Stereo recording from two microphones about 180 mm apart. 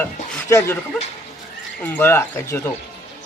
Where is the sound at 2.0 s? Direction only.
15° left (ahead or behind).